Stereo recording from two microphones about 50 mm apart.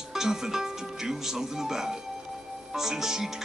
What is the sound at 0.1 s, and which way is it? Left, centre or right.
Speech, centre.